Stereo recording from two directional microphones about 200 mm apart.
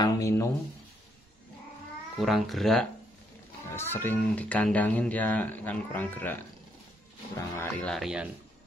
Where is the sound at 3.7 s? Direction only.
10° left (ahead or behind).